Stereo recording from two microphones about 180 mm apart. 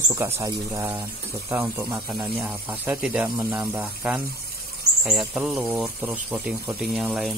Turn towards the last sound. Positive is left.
turn(degrees=0)  # may be behind; listen again after turning